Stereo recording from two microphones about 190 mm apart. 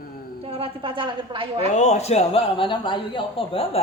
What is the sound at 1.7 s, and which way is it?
A man's voice, 35° left (ahead or behind).